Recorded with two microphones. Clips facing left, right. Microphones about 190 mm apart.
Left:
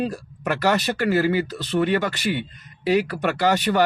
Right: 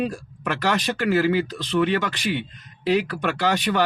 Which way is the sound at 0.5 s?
45° left (ahead or behind).